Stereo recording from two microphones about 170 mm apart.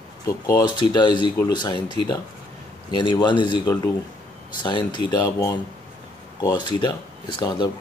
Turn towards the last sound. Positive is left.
turn(degrees=25)  # may be behind; listen again after turning